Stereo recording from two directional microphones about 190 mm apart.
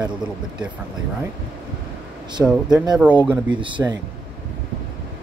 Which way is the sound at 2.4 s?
5° right (ahead or behind).